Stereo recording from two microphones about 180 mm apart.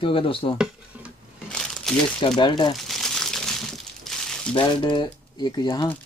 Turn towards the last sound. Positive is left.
turn(degrees=25)  # may be behind; listen again after turning